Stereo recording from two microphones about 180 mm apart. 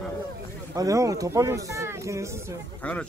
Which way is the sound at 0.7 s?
20° right (ahead or behind).